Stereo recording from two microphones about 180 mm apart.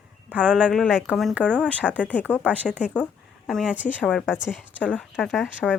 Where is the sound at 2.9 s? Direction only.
5° left (ahead or behind).